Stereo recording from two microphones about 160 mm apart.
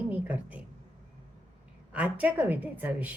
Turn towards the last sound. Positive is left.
turn(degrees=-10)  # may be behind; listen again after turning